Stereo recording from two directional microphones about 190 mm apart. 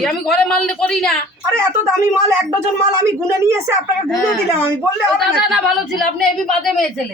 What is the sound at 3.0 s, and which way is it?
Speech, 15° right (ahead or behind).